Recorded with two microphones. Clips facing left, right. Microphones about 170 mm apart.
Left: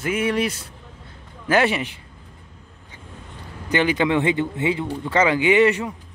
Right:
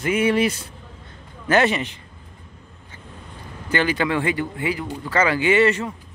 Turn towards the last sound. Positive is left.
turn(degrees=15)  # may be behind; listen again after turning